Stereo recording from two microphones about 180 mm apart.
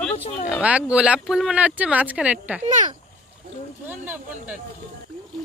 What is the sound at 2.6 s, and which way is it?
Speech, 45° right (ahead or behind).